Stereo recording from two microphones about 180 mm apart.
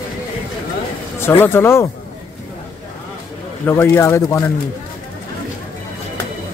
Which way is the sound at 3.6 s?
15° left (ahead or behind).